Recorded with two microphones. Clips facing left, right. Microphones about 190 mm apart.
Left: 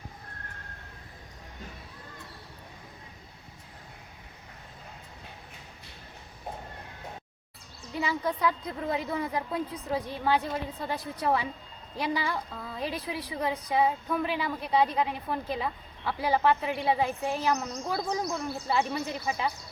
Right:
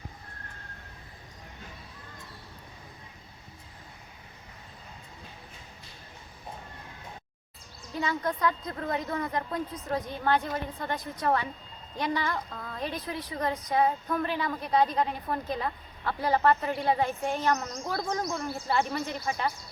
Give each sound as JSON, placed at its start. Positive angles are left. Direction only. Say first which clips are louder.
{"t": 7.9, "sound": "a woman's voice", "louder": "even", "side_deg": 5}